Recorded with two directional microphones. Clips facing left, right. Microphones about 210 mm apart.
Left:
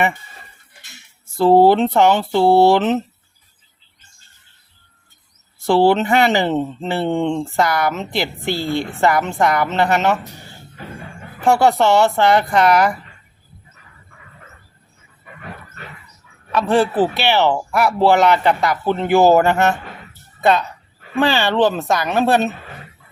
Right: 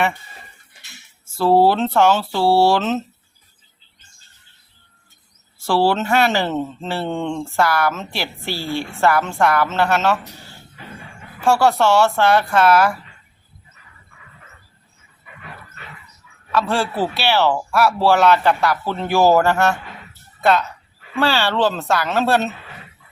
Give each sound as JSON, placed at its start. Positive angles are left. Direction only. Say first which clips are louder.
{"t": 1.4, "sound": "speech", "louder": "left 3 dB", "side_deg": 20}
{"t": 5.5, "sound": "speech", "louder": "left 4 dB", "side_deg": 20}
{"t": 11.4, "sound": "speech", "louder": "left 2 dB", "side_deg": 20}
{"t": 16.5, "sound": "speech", "louder": "left 4 dB", "side_deg": 20}